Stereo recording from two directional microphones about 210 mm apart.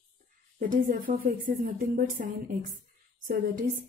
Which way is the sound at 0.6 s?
40° right (ahead or behind).